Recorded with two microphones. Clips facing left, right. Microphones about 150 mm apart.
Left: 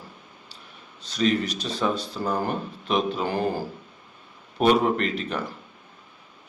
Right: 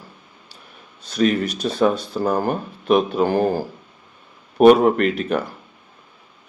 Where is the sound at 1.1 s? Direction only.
50° right (ahead or behind).